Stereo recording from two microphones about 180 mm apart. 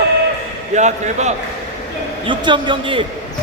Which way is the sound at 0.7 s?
40° right (ahead or behind).